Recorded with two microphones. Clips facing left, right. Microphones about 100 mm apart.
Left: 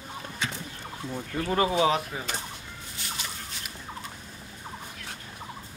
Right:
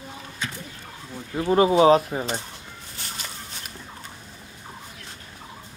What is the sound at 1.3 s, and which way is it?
Speech, 25° right (ahead or behind).